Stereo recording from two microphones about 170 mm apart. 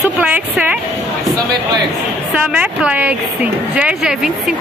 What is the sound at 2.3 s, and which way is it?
Speech, 5° right (ahead or behind).